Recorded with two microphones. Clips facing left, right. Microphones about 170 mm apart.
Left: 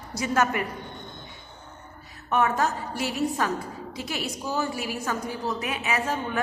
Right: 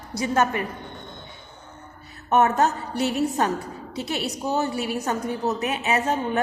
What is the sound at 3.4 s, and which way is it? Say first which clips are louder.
A woman's voice: right 3 dB; 30° right (ahead or behind).